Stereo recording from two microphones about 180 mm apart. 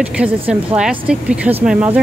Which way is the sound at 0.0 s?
5° right (ahead or behind).